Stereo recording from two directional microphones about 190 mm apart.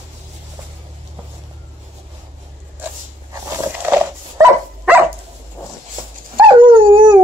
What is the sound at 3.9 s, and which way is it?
Dog, 10° right (ahead or behind).